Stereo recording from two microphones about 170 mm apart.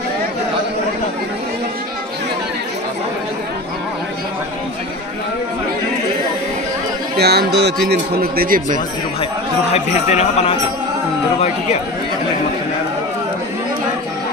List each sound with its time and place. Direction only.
7.2 s speech: 75° right (ahead or behind); by 8.8 s 55° right (ahead or behind)
9.7 s speech: 40° left (ahead or behind)